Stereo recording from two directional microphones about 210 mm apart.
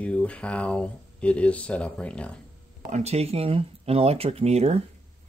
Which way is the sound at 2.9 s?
30° right (ahead or behind).